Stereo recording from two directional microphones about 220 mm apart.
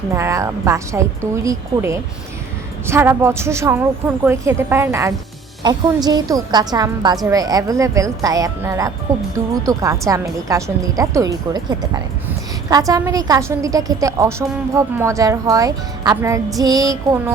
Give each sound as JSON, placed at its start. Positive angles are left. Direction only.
{"t": 0.1, "sound": "a woman's voice", "side_deg": -15}